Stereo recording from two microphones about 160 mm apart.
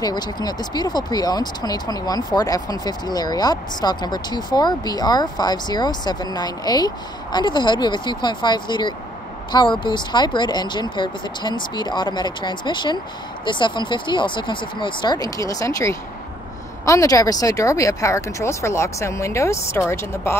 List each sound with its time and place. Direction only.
0.0 s speech: 25° left (ahead or behind)